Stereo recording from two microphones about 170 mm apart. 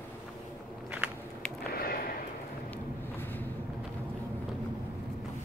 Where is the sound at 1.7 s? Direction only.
60° left (ahead or behind).